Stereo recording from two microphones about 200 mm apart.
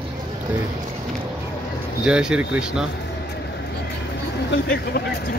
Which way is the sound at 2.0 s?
5° right (ahead or behind).